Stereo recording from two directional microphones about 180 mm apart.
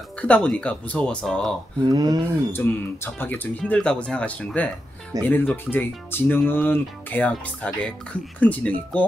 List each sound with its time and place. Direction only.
0.2 s speech: 5° left (ahead or behind)
1.9 s speech: 25° right (ahead or behind)
2.5 s speech: 10° left (ahead or behind)